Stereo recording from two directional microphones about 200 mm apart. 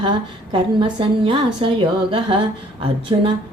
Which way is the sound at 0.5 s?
25° right (ahead or behind).